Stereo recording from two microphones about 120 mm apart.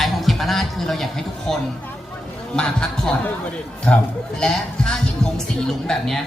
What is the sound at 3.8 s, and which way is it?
A man's voice, 10° left (ahead or behind).